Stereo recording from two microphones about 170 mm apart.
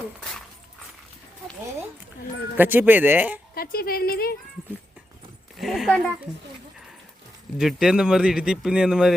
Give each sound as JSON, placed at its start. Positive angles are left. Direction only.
{"t": 0.2, "sound": "dog", "side_deg": 5}
{"t": 2.6, "sound": "speech", "side_deg": -10}
{"t": 3.5, "sound": "speech", "side_deg": 60}
{"t": 5.5, "sound": "speech", "side_deg": 0}
{"t": 7.6, "sound": "speech", "side_deg": -5}